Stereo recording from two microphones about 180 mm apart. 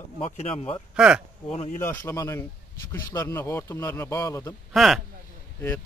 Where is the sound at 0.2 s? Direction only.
35° left (ahead or behind).